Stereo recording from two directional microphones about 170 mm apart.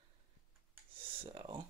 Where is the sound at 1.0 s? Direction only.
30° right (ahead or behind).